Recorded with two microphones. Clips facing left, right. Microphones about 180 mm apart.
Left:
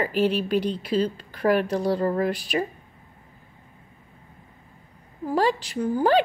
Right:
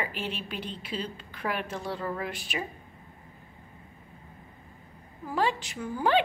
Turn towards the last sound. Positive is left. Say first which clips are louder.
# left 6 dB
turn(degrees=40)  # may be behind; listen again after turning